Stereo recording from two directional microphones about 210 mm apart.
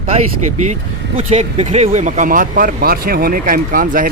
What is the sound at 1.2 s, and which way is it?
Speech, 30° right (ahead or behind).